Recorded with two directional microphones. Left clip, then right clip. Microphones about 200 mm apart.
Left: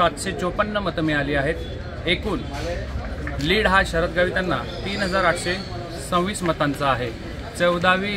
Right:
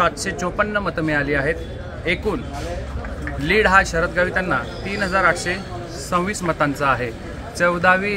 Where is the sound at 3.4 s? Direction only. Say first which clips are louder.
Right 3 dB; 20° right (ahead or behind).